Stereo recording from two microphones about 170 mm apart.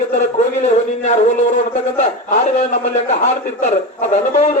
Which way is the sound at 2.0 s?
45° left (ahead or behind).